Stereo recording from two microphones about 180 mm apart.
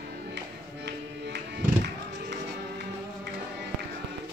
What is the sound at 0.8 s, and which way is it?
Music, 65° right (ahead or behind).